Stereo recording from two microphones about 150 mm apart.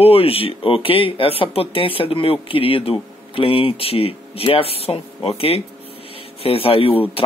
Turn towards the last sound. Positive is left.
turn(degrees=40)  # may be behind; listen again after turning